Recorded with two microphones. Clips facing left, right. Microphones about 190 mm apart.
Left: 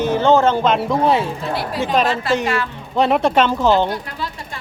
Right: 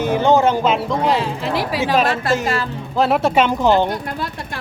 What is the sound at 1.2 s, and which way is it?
Speech, 90° right.